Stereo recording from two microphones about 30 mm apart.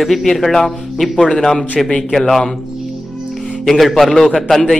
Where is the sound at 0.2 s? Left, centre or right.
Centre.